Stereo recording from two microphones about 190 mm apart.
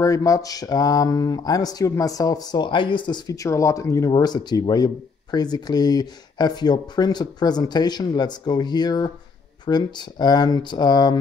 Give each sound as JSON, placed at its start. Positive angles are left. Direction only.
{"t": 0.0, "sound": "speech", "side_deg": 15}